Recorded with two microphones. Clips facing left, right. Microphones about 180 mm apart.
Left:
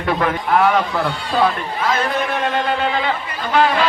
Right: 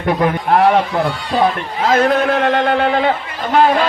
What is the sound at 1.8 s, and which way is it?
A man's voice, 55° right (ahead or behind).